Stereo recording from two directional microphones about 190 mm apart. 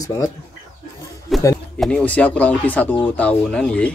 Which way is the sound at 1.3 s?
Centre (ahead or behind).